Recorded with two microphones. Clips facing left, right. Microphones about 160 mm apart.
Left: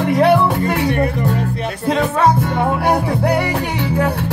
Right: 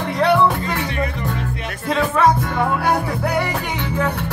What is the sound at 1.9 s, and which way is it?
Music, 25° left (ahead or behind).